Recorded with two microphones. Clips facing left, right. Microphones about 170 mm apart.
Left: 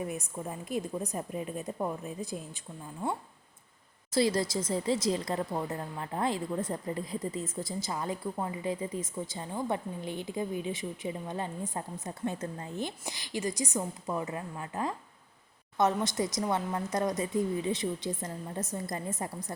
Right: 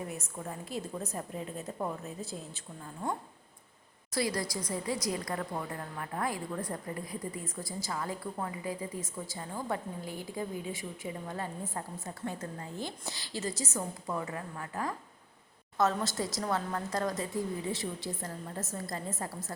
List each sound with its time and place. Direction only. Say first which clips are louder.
0.1 s a woman's voice: left 3 dB; 15° left (ahead or behind)
4.1 s speech: left 5 dB; 25° left (ahead or behind)